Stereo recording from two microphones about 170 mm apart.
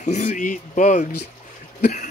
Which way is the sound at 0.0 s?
45° left (ahead or behind).